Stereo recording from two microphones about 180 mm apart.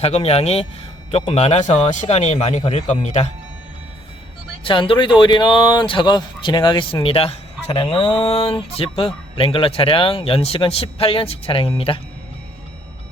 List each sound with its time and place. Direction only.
0.0 s a man's voice: 35° left (ahead or behind)
4.6 s speech: 30° left (ahead or behind)